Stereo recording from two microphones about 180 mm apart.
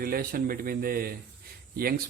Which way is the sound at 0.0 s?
55° right (ahead or behind).